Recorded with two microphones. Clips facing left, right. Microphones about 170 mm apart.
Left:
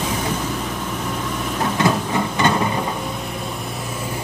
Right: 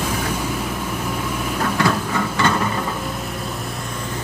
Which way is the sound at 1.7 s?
20° left (ahead or behind).